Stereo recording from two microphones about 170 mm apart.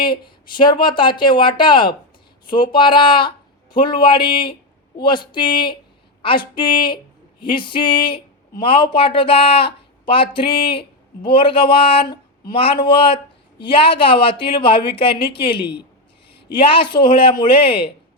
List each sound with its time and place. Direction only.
0.0 s a woman's voice: 25° left (ahead or behind)